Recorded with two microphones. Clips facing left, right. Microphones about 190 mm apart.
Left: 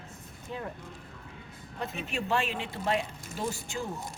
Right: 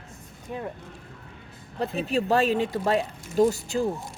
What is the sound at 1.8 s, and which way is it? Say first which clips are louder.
Speech: right 9 dB; 35° right (ahead or behind).